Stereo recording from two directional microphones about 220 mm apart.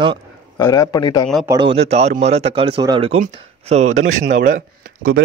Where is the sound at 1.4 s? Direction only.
20° right (ahead or behind); by 5.1 s 40° right (ahead or behind).